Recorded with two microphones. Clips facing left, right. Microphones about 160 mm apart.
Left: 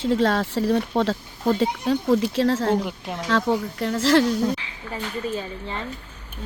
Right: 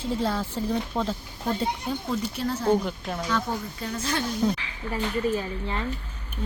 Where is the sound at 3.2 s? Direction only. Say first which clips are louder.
Left 8 dB; 85° left.